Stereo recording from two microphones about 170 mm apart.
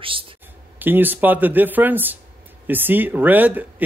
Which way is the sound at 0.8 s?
10° right (ahead or behind).